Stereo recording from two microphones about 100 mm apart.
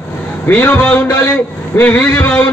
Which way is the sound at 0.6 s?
20° left (ahead or behind).